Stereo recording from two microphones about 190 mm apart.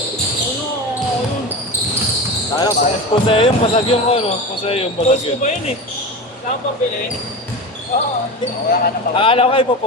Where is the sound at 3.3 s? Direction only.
30° left (ahead or behind).